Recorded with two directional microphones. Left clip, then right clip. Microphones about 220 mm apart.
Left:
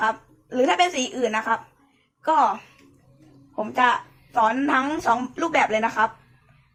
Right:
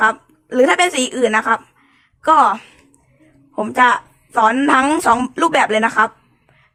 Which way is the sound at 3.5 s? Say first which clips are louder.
Right 7 dB; 45° right (ahead or behind).